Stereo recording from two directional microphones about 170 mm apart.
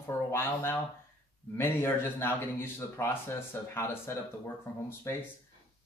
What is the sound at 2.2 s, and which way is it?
Speech, 15° left (ahead or behind).